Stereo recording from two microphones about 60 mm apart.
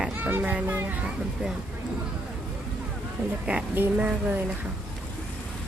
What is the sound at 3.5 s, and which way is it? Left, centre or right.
Speech, right.